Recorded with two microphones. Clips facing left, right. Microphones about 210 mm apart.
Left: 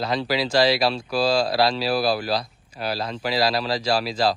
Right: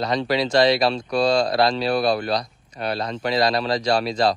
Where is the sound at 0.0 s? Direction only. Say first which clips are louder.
Right 2 dB; 5° left (ahead or behind).